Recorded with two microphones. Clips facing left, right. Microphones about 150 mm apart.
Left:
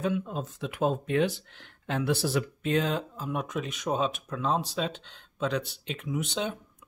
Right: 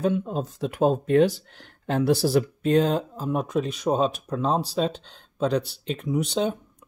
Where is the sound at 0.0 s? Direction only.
35° right (ahead or behind).